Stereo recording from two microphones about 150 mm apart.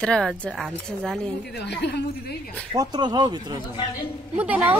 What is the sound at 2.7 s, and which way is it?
Speech, 25° right (ahead or behind).